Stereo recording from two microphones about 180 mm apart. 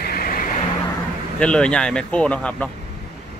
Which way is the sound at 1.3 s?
5° left (ahead or behind).